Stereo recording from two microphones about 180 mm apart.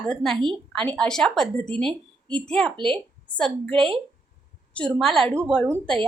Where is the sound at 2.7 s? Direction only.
30° right (ahead or behind).